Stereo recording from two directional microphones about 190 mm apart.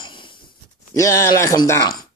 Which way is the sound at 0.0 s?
25° left (ahead or behind).